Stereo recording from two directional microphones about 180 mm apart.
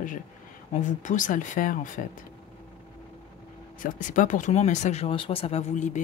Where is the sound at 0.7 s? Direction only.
45° left (ahead or behind).